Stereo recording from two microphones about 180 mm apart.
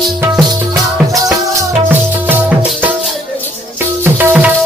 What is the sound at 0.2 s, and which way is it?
Music, 10° right (ahead or behind).